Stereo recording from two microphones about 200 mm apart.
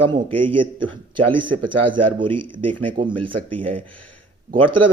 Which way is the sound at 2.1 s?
25° right (ahead or behind).